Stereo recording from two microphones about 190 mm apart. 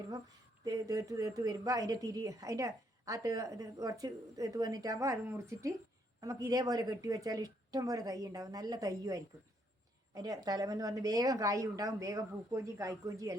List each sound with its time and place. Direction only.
0.6 s speech: 20° right (ahead or behind)